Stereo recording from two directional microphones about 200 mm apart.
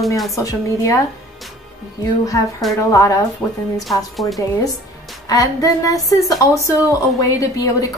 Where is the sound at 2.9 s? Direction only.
15° left (ahead or behind).